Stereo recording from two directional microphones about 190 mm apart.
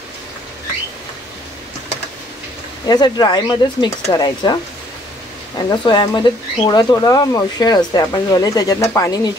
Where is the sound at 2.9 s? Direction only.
20° left (ahead or behind).